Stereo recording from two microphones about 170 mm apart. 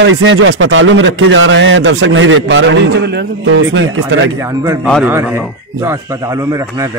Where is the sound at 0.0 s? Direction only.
90° right.